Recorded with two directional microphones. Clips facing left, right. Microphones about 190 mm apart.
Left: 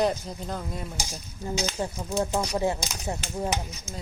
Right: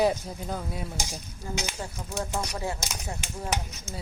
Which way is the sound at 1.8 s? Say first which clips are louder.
Left 6 dB; 25° left (ahead or behind).